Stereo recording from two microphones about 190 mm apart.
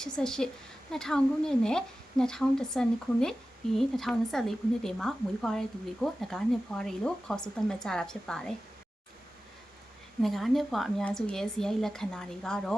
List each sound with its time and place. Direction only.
0.0 s a woman's voice: 5° left (ahead or behind)
10.2 s a woman's voice: centre (ahead or behind)